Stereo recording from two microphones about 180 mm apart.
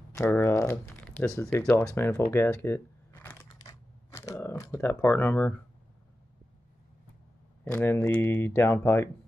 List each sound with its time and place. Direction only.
0.1 s speech: 15° left (ahead or behind)
2.3 s camera: 15° left (ahead or behind)
7.6 s speech: 15° left (ahead or behind)